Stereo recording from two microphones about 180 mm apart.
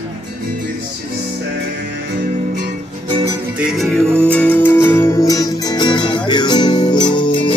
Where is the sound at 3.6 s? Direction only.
Centre (ahead or behind); by 7.5 s 25° left (ahead or behind).